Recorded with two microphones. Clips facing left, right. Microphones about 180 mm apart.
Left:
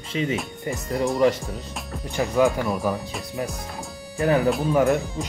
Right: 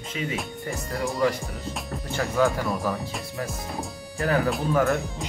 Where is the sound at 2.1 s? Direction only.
15° left (ahead or behind).